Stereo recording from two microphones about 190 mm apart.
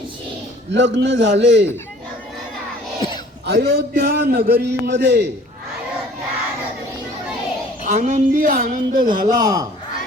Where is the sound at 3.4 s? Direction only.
60° right (ahead or behind).